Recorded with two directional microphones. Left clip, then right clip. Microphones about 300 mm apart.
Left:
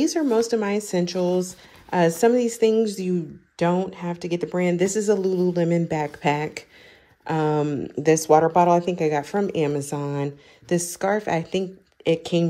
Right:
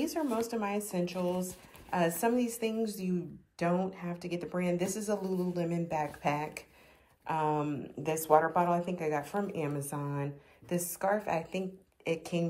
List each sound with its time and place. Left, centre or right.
0.0 s speech: left